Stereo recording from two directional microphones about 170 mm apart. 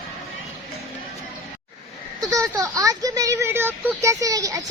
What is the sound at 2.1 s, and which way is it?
Speech, 20° right (ahead or behind).